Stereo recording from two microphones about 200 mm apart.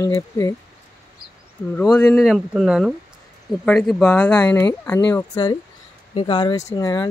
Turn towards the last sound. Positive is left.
turn(degrees=20)  # may be behind; listen again after turning